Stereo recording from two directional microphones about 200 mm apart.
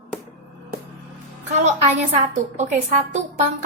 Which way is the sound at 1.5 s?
35° right (ahead or behind).